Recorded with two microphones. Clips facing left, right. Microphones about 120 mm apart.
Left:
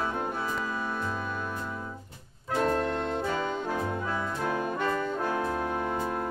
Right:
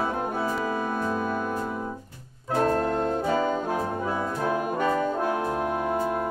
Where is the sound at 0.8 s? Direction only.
45° right (ahead or behind).